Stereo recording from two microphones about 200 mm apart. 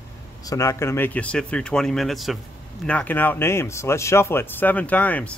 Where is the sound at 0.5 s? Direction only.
15° left (ahead or behind).